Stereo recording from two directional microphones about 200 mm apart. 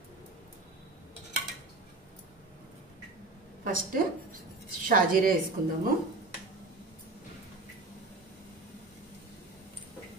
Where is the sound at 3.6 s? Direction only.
45° right (ahead or behind).